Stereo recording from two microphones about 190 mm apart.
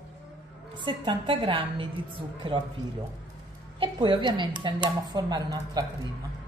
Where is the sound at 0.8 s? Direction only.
25° right (ahead or behind).